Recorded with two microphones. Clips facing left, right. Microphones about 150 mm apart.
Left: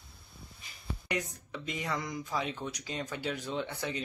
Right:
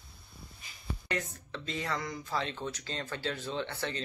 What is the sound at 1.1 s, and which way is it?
Speech, 15° left (ahead or behind).